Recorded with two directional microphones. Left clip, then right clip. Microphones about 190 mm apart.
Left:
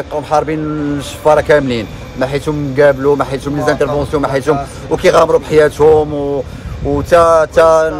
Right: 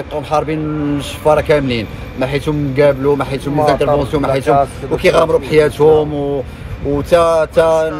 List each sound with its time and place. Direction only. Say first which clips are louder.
0.1 s a man's voice: left 2 dB; 15° left (ahead or behind)